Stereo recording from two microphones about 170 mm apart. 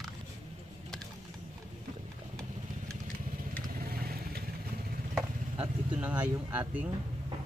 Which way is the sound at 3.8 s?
60° right (ahead or behind).